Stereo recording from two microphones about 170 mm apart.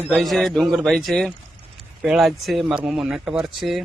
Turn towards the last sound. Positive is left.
turn(degrees=0)  # may be behind; listen again after turning